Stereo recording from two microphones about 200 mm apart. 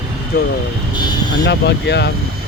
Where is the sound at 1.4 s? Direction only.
60° left (ahead or behind).